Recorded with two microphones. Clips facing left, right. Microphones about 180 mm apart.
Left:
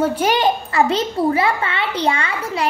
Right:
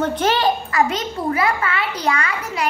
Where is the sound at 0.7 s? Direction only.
30° left (ahead or behind).